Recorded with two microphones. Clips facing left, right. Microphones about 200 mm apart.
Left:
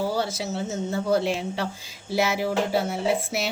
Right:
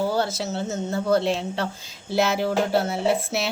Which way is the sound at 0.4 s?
Centre (ahead or behind).